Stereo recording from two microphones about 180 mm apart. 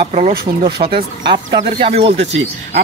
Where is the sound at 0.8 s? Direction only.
40° right (ahead or behind).